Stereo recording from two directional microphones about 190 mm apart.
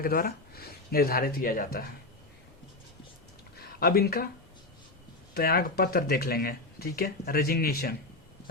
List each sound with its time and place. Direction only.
0.0 s speech: 50° left (ahead or behind)
3.6 s speech: 55° left (ahead or behind)
5.3 s speech: 55° left (ahead or behind)